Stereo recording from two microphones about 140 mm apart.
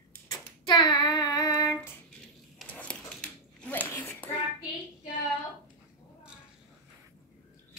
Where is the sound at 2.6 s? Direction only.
10° left (ahead or behind).